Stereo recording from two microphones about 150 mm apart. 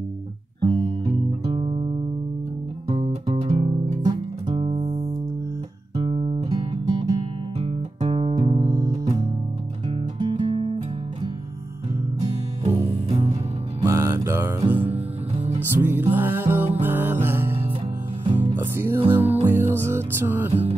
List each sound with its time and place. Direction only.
0.6 s guitar: 40° right (ahead or behind)
1.4 s music: 35° right (ahead or behind)
2.9 s music: 40° right (ahead or behind)
5.9 s music: 35° right (ahead or behind)
12.6 s music: 45° right (ahead or behind)
13.8 s music: 20° right (ahead or behind)
14.8 s music: 40° right (ahead or behind)
15.7 s music: 15° right (ahead or behind)
18.2 s music: 45° right (ahead or behind)
19.0 s music: 15° right (ahead or behind)